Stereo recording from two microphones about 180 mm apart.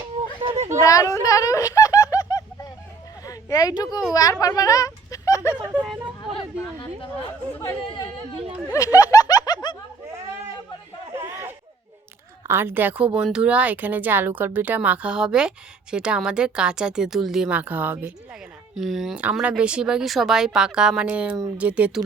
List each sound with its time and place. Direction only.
0.4 s a sound: 35° right (ahead or behind)
0.9 s speech: 20° left (ahead or behind)
3.2 s a sound: 20° left (ahead or behind)
4.1 s a child's voice: 20° left (ahead or behind)
5.7 s a sound: centre (ahead or behind)
7.5 s speech: 15° left (ahead or behind)
8.7 s snicker: 20° left (ahead or behind)
11.1 s chatter: 10° right (ahead or behind)
12.5 s a woman's voice: 10° right (ahead or behind)